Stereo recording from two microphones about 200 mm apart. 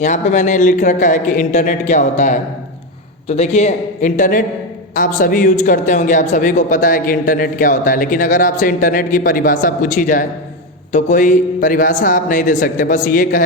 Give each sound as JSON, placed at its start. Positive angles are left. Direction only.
{"t": 0.0, "sound": "speech", "side_deg": 35}